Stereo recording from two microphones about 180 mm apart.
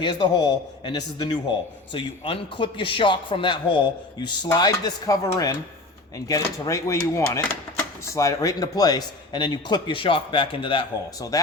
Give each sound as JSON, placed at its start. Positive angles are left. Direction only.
{"t": 0.0, "sound": "a man's voice", "side_deg": 25}